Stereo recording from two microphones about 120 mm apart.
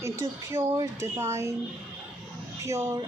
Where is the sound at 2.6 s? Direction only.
25° right (ahead or behind).